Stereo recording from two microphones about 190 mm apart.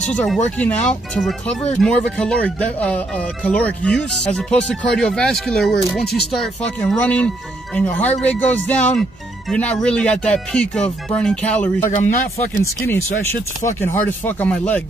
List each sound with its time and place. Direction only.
0.0 s speech: 5° left (ahead or behind)
11.9 s speech: 40° left (ahead or behind)
12.8 s speech: 10° left (ahead or behind)